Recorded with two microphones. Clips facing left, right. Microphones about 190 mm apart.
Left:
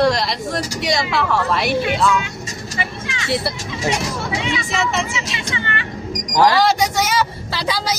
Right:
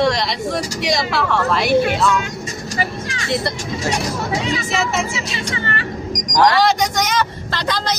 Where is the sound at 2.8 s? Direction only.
40° right (ahead or behind).